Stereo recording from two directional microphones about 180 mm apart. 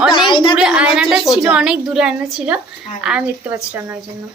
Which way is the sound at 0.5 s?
5° right (ahead or behind).